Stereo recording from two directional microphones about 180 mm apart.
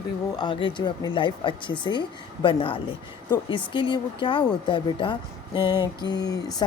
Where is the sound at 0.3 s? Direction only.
25° left (ahead or behind).